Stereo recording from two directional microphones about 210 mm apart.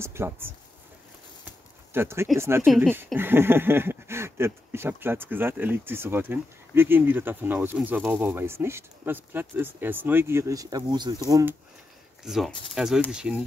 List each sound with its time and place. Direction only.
0.0 s speech: 10° right (ahead or behind)
2.0 s speech: 10° right (ahead or behind)
2.6 s speech: centre (ahead or behind)
12.3 s speech: centre (ahead or behind)